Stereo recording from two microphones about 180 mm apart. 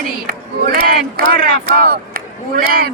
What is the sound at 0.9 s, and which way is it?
Speech, 55° right (ahead or behind).